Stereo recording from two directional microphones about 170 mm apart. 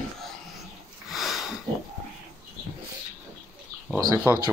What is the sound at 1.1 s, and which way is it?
Sniff, centre (ahead or behind).